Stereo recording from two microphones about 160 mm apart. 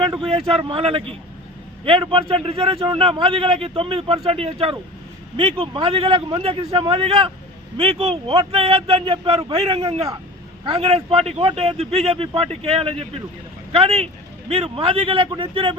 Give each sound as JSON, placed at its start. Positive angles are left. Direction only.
{"t": 0.0, "sound": "a man's voice", "side_deg": -35}